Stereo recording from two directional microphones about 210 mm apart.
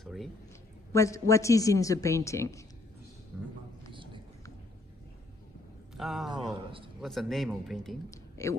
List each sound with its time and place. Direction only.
0.0 s a man's voice: centre (ahead or behind)
0.9 s a woman's voice: 15° left (ahead or behind)
3.9 s a sound: 25° right (ahead or behind)
5.9 s speech: centre (ahead or behind)
8.1 s speech: 15° left (ahead or behind)